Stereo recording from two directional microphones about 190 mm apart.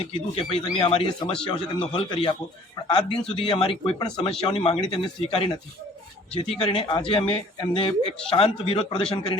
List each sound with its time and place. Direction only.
0.0 s speech: 30° left (ahead or behind)